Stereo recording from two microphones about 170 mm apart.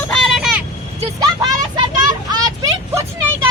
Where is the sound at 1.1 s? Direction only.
25° right (ahead or behind).